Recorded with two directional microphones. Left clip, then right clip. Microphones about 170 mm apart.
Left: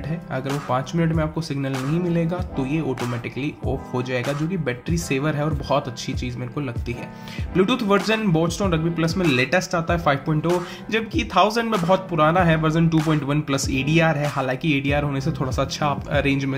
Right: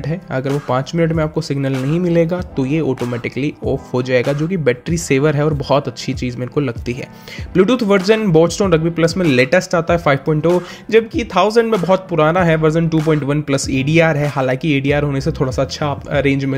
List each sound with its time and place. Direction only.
0.7 s speech: 35° right (ahead or behind)